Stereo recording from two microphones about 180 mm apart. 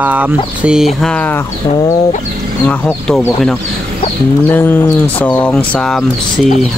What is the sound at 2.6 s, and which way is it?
Speech, 10° left (ahead or behind).